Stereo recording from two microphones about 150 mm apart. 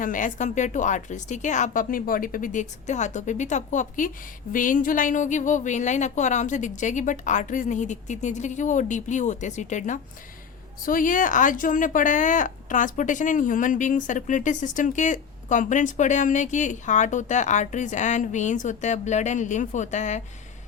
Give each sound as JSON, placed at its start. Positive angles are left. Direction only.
{"t": 0.0, "sound": "speech", "side_deg": 60}